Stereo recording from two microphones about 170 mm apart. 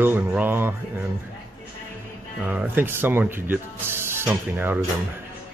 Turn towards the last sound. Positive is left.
turn(degrees=-10)  # may be behind; listen again after turning